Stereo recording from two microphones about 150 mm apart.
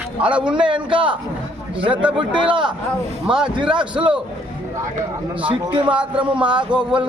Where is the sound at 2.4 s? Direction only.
35° right (ahead or behind).